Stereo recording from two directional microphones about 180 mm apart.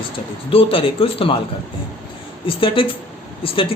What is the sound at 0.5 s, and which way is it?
Speech, 30° left (ahead or behind).